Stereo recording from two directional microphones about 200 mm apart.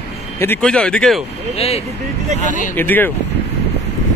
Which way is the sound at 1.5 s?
30° left (ahead or behind).